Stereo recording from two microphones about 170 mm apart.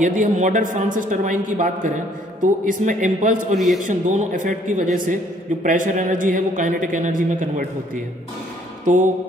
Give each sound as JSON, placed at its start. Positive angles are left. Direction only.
{"t": 0.0, "sound": "a man's voice", "side_deg": -50}
{"t": 3.5, "sound": "a man's voice", "side_deg": 0}
{"t": 3.8, "sound": "a man's voice", "side_deg": -45}
{"t": 8.8, "sound": "music", "side_deg": -50}